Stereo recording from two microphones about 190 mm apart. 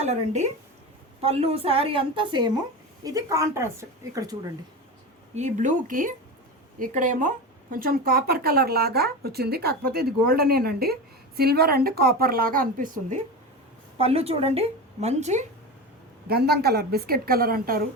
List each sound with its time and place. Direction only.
0.0 s a woman's voice: 35° right (ahead or behind); by 4.4 s 20° right (ahead or behind)
5.3 s speech: 40° right (ahead or behind)
14.0 s speech: 30° right (ahead or behind)
16.3 s a woman's voice: 55° right (ahead or behind)